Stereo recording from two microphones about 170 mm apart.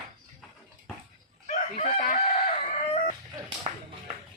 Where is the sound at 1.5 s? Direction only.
50° left (ahead or behind).